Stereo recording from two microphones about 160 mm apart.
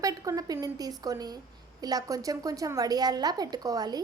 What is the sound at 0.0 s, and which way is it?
A woman's voice, 20° right (ahead or behind).